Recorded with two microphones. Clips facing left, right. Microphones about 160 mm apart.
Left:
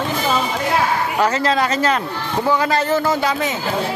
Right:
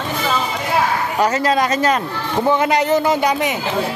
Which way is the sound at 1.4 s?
15° right (ahead or behind).